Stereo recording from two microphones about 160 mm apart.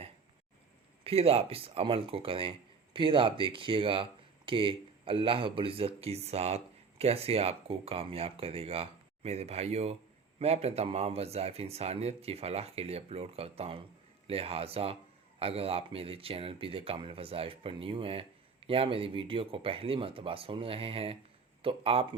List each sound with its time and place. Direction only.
1.0 s speech: 35° right (ahead or behind)